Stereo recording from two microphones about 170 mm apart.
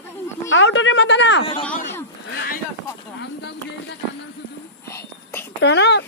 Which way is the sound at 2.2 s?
90° left.